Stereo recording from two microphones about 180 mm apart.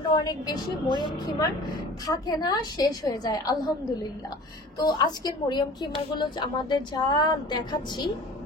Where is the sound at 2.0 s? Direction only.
20° left (ahead or behind).